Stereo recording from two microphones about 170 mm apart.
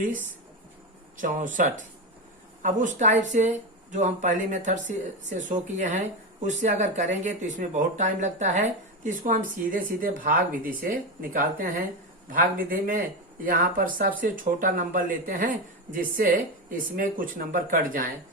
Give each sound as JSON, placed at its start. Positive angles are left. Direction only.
{"t": 1.1, "sound": "speech", "side_deg": -50}